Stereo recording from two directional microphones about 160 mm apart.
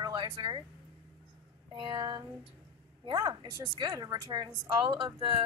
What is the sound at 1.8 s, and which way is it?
A woman's voice, 30° right (ahead or behind).